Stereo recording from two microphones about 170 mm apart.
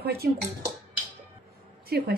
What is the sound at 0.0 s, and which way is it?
Speech, 65° right (ahead or behind).